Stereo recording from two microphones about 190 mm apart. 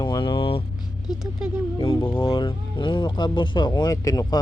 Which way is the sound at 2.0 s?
25° left (ahead or behind).